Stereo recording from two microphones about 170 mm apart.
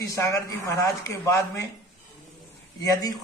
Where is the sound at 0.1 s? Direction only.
20° left (ahead or behind).